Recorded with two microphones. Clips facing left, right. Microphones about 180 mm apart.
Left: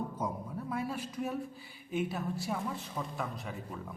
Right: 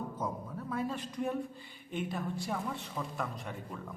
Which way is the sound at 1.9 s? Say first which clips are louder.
Left 2 dB; 5° left (ahead or behind).